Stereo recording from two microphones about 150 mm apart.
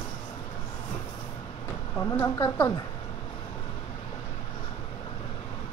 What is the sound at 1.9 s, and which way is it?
Speech, 15° left (ahead or behind).